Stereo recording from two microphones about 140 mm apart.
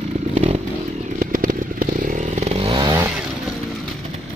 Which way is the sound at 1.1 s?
80° right.